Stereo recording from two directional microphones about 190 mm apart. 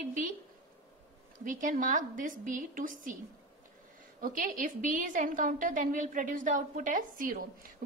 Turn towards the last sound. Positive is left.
turn(degrees=-50)  # may be behind; listen again after turning